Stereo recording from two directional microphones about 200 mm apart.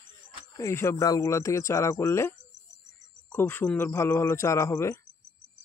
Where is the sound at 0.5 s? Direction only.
15° left (ahead or behind).